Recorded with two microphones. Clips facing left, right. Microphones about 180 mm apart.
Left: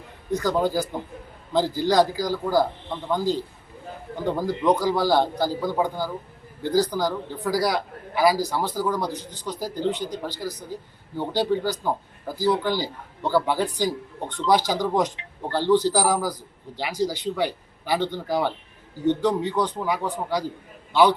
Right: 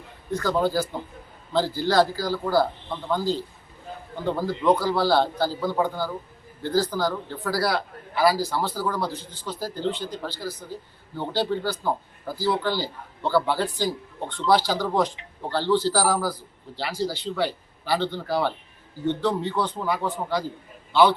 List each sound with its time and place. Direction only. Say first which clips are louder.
0.3 s a man's voice: left 1 dB; 15° left (ahead or behind)
4.3 s a man's voice: even; 15° left (ahead or behind)